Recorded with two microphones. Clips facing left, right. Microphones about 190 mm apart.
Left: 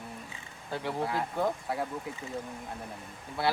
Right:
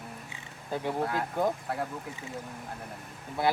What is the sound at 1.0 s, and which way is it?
Speech, centre (ahead or behind).